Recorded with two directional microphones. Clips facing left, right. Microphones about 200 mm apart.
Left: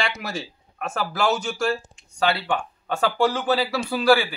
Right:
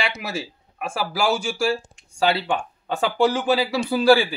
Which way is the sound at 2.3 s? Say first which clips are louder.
Right 2 dB; 20° right (ahead or behind).